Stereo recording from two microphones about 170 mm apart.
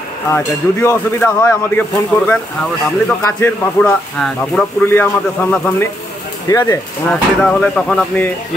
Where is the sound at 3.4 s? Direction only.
10° left (ahead or behind).